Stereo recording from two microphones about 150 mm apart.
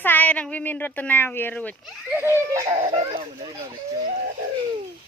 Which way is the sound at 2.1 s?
15° right (ahead or behind).